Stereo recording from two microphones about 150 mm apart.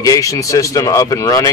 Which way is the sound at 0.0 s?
25° left (ahead or behind).